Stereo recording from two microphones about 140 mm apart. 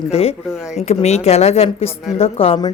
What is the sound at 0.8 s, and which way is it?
Speech, 50° left (ahead or behind).